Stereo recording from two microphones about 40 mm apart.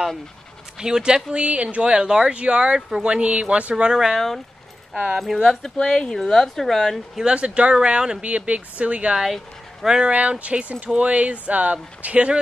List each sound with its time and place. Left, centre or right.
0.7 s speech: centre; by 1.8 s right
1.8 s speech: right
3.9 s speech: centre
5.9 s a woman's voice: centre
7.2 s speech: right
8.2 s speech: right
9.1 s speech: centre
10.0 s speech: right